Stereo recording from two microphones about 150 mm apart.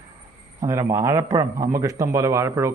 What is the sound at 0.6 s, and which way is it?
A man's voice, 20° right (ahead or behind).